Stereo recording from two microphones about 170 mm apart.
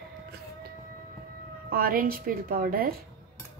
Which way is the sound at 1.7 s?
60° right (ahead or behind).